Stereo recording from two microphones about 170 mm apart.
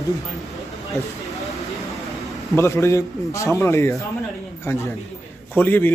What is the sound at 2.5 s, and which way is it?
A man's voice, 15° left (ahead or behind).